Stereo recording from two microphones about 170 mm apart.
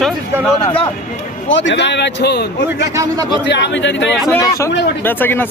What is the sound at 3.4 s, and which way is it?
Speech, 90° left.